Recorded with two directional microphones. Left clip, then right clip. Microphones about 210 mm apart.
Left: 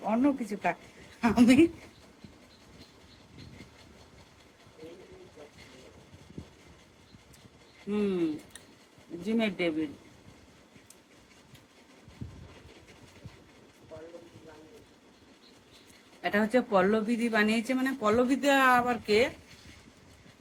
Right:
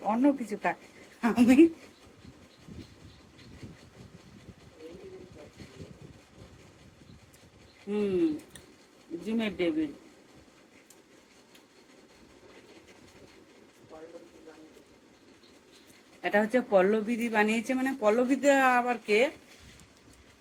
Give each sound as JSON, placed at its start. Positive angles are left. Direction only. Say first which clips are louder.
{"t": 0.1, "sound": "a woman's voice", "louder": "right 2 dB", "side_deg": 10}
{"t": 7.9, "sound": "a woman's voice", "louder": "even", "side_deg": 15}
{"t": 9.2, "sound": "a woman's voice", "louder": "left 1 dB", "side_deg": 15}
{"t": 16.2, "sound": "a woman's voice", "louder": "right 1 dB", "side_deg": 15}